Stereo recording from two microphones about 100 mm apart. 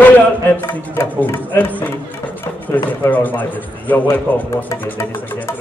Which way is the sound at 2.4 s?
20° left (ahead or behind).